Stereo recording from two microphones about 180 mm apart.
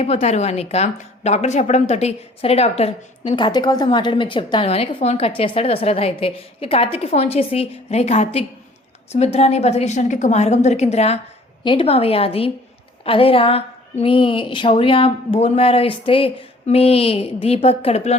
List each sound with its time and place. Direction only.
0.0 s a woman's voice: 35° left (ahead or behind)